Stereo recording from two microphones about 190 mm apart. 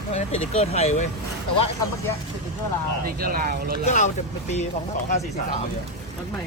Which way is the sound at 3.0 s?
50° right (ahead or behind).